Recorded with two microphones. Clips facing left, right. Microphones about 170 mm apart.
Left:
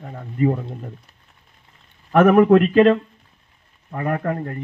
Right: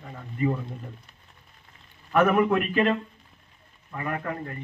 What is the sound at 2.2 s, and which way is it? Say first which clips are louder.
Speech: left 9 dB; 55° left (ahead or behind).